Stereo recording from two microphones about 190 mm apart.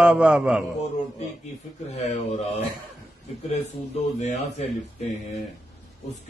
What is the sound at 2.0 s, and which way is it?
Speech, 35° left (ahead or behind).